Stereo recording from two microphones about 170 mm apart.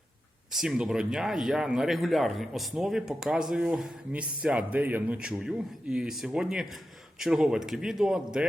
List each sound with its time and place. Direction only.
0.5 s speech: centre (ahead or behind)